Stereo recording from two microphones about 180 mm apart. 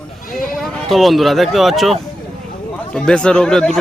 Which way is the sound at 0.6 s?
5° left (ahead or behind).